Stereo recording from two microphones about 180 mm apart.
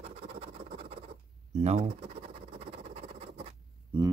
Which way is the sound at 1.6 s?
40° right (ahead or behind).